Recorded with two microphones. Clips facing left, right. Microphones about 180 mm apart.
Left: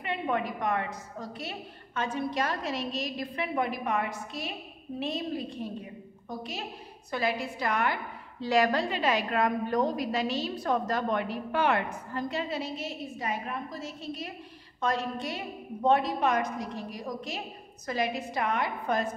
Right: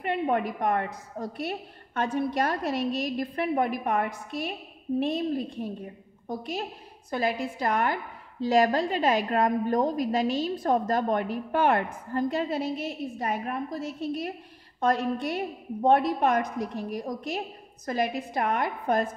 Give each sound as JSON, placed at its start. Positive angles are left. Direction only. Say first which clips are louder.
{"t": 0.0, "sound": "a woman's voice", "louder": "right 4 dB", "side_deg": -50}